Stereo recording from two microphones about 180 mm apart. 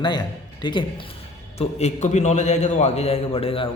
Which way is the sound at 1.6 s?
35° left (ahead or behind).